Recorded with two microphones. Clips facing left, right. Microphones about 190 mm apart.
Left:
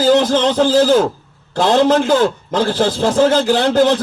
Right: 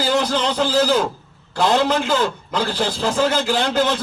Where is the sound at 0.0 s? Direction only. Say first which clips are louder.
Left 7 dB; 45° left (ahead or behind).